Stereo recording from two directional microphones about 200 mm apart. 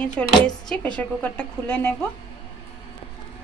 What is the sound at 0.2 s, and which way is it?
Speech, 5° left (ahead or behind).